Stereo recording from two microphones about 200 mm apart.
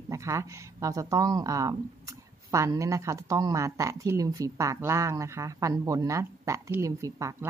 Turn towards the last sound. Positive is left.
turn(degrees=-15)  # may be behind; listen again after turning